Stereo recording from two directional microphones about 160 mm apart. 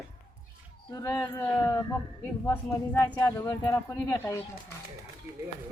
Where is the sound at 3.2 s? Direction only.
20° left (ahead or behind).